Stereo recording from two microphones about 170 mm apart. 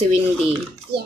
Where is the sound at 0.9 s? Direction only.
70° right (ahead or behind).